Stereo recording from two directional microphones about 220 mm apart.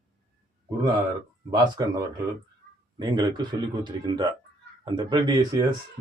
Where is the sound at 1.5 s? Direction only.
15° right (ahead or behind).